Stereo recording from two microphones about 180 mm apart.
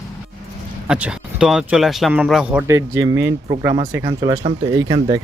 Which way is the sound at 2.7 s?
15° right (ahead or behind).